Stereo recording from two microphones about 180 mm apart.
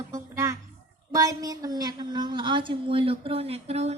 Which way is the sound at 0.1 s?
15° right (ahead or behind).